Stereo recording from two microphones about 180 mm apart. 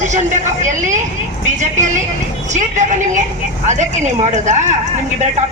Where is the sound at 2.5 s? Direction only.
40° right (ahead or behind).